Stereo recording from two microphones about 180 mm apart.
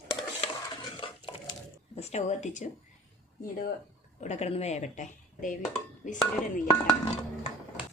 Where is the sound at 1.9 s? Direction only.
40° left (ahead or behind).